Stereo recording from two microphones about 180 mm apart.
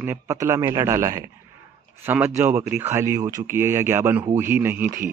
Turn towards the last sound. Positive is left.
turn(degrees=-10)  # may be behind; listen again after turning